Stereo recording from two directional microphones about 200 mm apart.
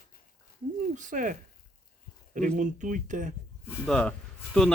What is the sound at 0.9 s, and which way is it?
Speech, 40° right (ahead or behind).